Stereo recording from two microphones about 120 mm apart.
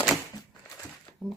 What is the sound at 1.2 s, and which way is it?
Speech, 10° left (ahead or behind).